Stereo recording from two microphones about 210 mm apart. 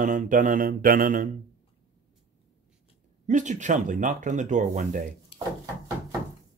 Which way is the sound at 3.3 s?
35° right (ahead or behind).